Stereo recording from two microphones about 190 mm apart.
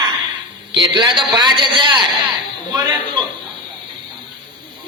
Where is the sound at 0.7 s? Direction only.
25° right (ahead or behind).